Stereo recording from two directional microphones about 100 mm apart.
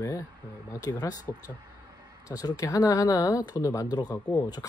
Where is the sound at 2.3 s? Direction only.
35° left (ahead or behind).